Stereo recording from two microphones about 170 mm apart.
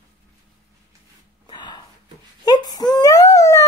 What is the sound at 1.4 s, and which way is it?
Gasp, 25° left (ahead or behind).